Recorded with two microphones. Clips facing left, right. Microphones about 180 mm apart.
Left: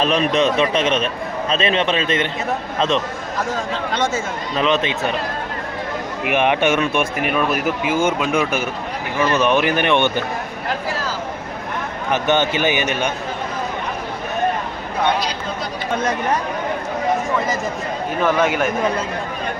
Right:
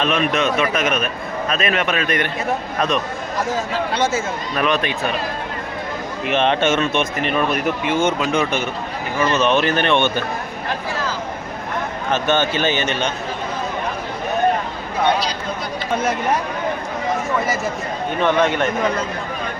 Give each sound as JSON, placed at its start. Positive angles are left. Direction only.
{"t": 0.0, "sound": "a man's voice", "side_deg": 35}
{"t": 3.9, "sound": "speech", "side_deg": -10}
{"t": 4.5, "sound": "a man's voice", "side_deg": 20}
{"t": 6.2, "sound": "speech", "side_deg": 15}
{"t": 12.1, "sound": "speech", "side_deg": 15}
{"t": 16.0, "sound": "speech", "side_deg": -5}
{"t": 18.2, "sound": "a man's voice", "side_deg": 5}